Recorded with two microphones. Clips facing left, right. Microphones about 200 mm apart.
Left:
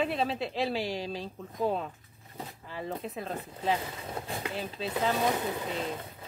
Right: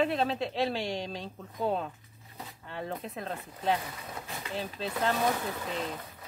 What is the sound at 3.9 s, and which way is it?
Speech, 30° left (ahead or behind).